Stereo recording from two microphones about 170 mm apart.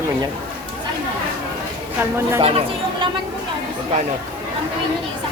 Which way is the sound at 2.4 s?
35° right (ahead or behind).